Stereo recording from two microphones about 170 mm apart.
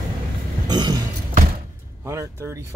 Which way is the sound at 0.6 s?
25° right (ahead or behind).